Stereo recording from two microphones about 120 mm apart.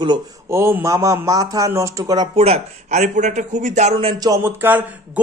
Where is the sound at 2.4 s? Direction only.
70° right (ahead or behind).